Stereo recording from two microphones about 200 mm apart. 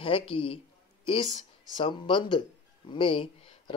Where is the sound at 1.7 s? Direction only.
25° left (ahead or behind).